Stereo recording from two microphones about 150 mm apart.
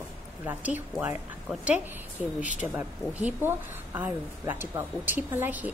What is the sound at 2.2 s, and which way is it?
Speech, 5° right (ahead or behind).